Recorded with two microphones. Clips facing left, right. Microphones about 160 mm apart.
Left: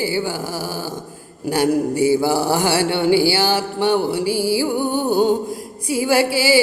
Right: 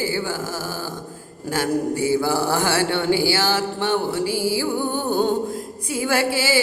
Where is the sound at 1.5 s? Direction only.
15° left (ahead or behind).